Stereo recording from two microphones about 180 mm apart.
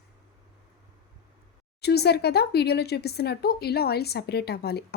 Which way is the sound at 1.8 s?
65° left (ahead or behind).